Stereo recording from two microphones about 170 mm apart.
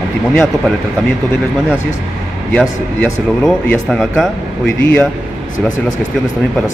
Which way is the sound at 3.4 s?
5° left (ahead or behind).